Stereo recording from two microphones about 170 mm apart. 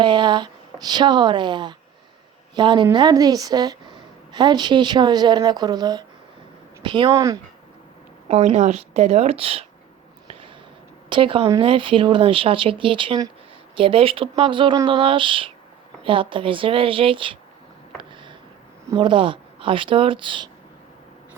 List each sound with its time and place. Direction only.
0.0 s a woman's voice: 25° right (ahead or behind)
8.3 s speech: 40° right (ahead or behind)
11.1 s speech: 30° right (ahead or behind)
18.9 s speech: 30° right (ahead or behind)